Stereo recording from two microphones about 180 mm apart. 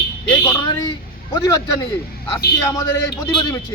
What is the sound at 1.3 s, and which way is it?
Speech, 20° left (ahead or behind).